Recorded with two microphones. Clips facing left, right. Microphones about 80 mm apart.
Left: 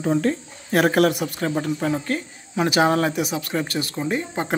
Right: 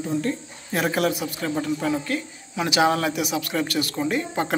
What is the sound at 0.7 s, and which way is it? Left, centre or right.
Speech, left.